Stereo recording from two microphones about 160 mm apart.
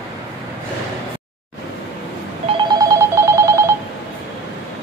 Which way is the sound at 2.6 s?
25° right (ahead or behind).